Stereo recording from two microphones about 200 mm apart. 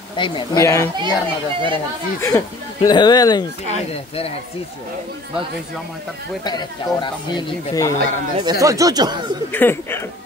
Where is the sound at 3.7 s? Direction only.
30° left (ahead or behind).